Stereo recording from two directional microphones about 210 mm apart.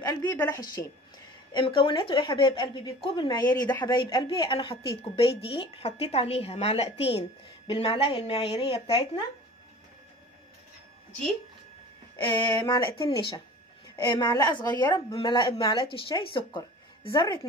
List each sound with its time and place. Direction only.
0.0 s a woman's voice: 15° left (ahead or behind)
12.3 s a woman's voice: 20° left (ahead or behind)